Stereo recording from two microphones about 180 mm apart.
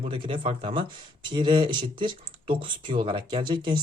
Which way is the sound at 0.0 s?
30° right (ahead or behind).